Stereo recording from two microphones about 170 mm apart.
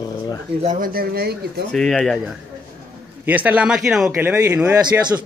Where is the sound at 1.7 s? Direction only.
5° left (ahead or behind).